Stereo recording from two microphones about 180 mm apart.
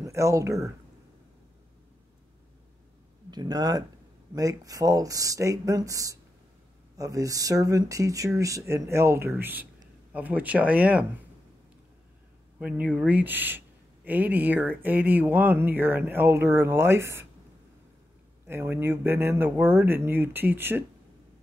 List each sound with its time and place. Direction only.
0.0 s speech: 15° right (ahead or behind)
3.3 s speech: 25° right (ahead or behind); by 11.1 s 5° right (ahead or behind)
12.5 s speech: 5° right (ahead or behind)
18.5 s speech: 15° right (ahead or behind)